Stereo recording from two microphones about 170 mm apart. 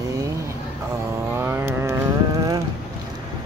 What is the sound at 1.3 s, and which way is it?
Vehicle, 15° right (ahead or behind).